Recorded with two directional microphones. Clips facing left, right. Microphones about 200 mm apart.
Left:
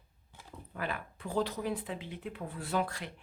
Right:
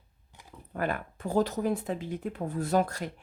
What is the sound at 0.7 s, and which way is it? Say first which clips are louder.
Speech: right 7 dB; 50° right (ahead or behind).